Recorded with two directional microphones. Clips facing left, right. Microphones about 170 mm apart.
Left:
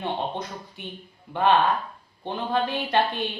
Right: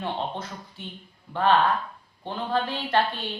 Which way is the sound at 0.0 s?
15° left (ahead or behind).